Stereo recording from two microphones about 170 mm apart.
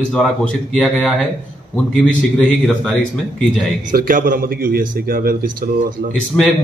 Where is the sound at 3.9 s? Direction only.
55° right (ahead or behind).